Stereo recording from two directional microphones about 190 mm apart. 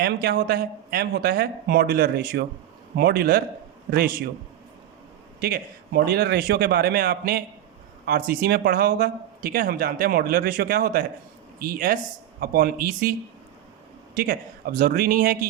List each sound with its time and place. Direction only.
0.0 s speech: 55° right (ahead or behind)
5.4 s speech: 55° right (ahead or behind)
14.2 s speech: 50° right (ahead or behind)